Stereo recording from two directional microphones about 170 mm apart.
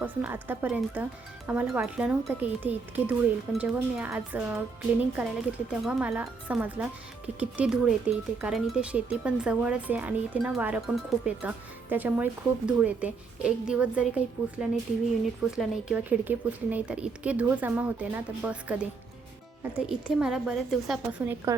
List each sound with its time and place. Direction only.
0.0 s speech: 10° right (ahead or behind)
15.4 s a woman's voice: 5° right (ahead or behind)
21.5 s speech: 15° right (ahead or behind)